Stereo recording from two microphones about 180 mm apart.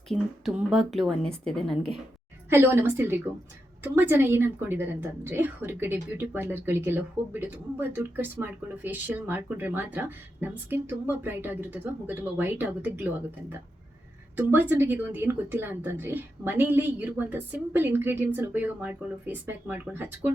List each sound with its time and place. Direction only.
0.1 s a woman's voice: centre (ahead or behind)
2.5 s a woman's voice: 10° right (ahead or behind)